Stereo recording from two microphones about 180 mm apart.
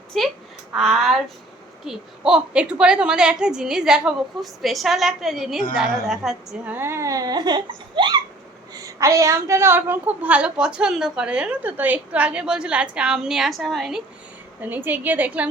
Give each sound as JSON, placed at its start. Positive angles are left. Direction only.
{"t": 0.1, "sound": "a woman's voice", "side_deg": 0}